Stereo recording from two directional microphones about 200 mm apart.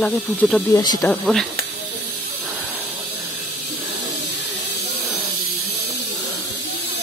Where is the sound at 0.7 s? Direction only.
20° left (ahead or behind).